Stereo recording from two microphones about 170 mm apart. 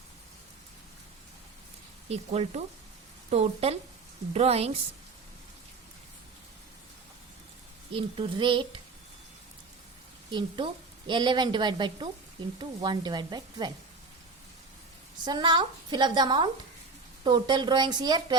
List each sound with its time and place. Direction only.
2.0 s speech: 40° right (ahead or behind)
7.9 s speech: 30° right (ahead or behind)
10.3 s a woman's voice: 30° right (ahead or behind)
15.2 s a woman's voice: 25° right (ahead or behind)